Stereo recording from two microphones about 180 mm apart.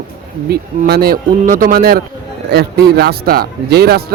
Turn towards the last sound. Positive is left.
turn(degrees=-60)  # may be behind; listen again after turning